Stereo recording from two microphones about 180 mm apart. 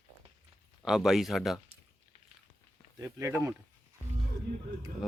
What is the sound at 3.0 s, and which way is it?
Speech, 10° right (ahead or behind).